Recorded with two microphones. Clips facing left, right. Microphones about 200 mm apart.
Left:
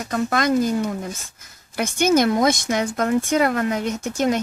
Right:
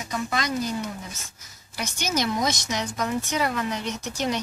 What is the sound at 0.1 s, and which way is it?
Speech, 55° left (ahead or behind).